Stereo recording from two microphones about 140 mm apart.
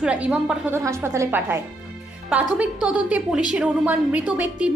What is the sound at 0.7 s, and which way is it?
A woman's voice, 20° right (ahead or behind).